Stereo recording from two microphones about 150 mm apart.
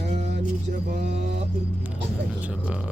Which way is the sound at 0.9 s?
90° right.